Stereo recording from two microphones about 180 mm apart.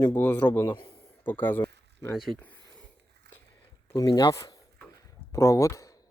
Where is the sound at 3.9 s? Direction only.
20° left (ahead or behind).